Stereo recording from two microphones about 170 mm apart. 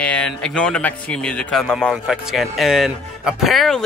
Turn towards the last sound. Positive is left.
turn(degrees=0)  # may be behind; listen again after turning